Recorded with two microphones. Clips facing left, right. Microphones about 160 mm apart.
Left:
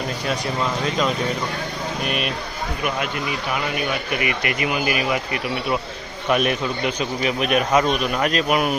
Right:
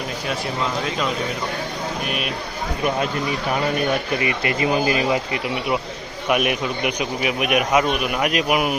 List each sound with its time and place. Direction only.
2.0 s speech: centre (ahead or behind)
4.1 s speech: 30° right (ahead or behind)